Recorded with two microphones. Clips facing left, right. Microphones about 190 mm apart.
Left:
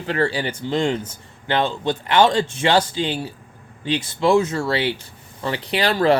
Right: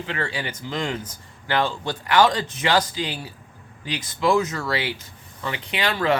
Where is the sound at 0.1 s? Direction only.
35° left (ahead or behind).